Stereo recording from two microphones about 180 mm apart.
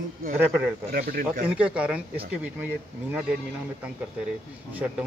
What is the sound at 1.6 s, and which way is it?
Speech, 5° right (ahead or behind).